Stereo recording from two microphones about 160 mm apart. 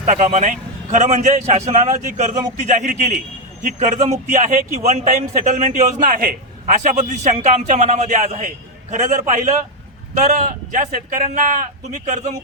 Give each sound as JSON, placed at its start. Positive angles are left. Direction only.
{"t": 0.0, "sound": "a man's voice", "side_deg": -50}
{"t": 10.7, "sound": "a man's voice", "side_deg": -55}